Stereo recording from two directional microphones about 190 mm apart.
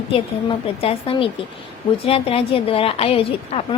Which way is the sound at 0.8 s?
30° left (ahead or behind).